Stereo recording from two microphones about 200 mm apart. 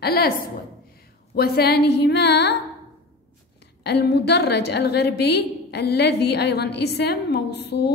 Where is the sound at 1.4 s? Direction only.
50° left (ahead or behind).